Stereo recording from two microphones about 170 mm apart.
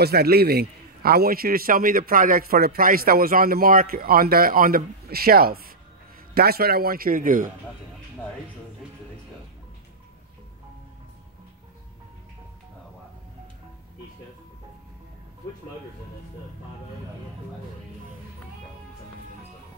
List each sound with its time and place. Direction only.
0.0 s a man's voice: 65° right (ahead or behind)